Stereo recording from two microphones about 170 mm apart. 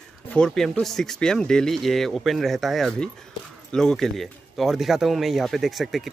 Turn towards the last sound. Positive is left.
turn(degrees=0)  # may be behind; listen again after turning